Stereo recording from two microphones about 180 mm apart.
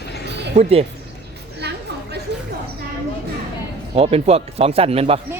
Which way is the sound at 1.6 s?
65° right (ahead or behind).